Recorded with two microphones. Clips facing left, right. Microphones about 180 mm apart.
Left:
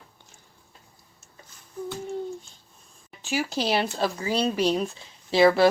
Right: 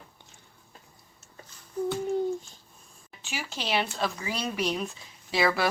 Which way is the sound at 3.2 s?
40° left (ahead or behind).